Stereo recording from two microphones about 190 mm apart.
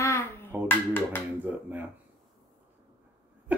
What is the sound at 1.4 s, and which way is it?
Speech, 10° right (ahead or behind).